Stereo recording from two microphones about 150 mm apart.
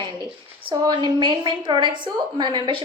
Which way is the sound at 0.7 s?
30° right (ahead or behind).